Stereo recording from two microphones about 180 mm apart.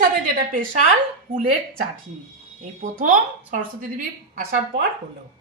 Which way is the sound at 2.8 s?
45° right (ahead or behind).